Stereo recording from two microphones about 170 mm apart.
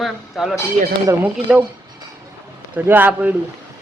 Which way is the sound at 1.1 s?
10° right (ahead or behind).